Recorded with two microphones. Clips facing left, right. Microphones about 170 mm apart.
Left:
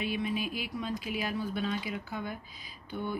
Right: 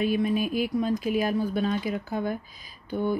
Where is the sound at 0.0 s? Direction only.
45° right (ahead or behind).